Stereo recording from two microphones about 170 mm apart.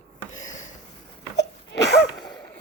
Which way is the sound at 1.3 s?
85° left.